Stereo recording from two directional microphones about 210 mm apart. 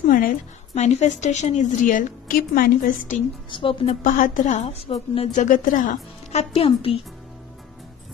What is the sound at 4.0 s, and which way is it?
A woman's voice, 40° left (ahead or behind).